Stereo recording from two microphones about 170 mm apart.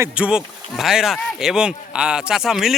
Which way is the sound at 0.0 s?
5° right (ahead or behind).